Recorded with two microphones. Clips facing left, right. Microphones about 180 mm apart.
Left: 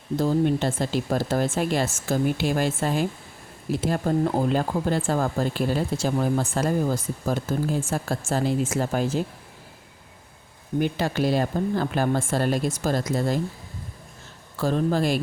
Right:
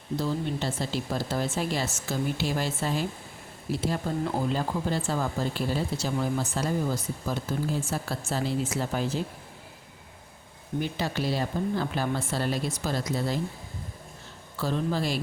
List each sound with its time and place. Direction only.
0.2 s speech: 50° left (ahead or behind)
10.8 s speech: 50° left (ahead or behind)
14.6 s speech: 50° left (ahead or behind)